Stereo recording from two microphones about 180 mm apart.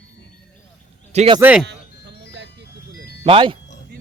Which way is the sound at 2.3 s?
80° right.